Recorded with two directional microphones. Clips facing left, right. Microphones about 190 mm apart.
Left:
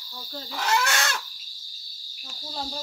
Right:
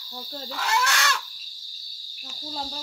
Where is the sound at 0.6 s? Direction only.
20° left (ahead or behind).